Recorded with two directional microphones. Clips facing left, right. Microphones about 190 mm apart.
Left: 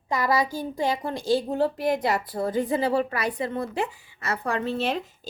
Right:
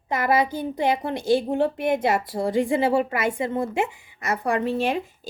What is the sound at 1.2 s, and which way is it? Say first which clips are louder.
A woman's voice: right 1 dB; 20° right (ahead or behind).